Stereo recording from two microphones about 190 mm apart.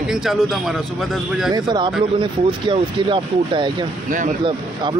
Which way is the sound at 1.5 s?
25° right (ahead or behind).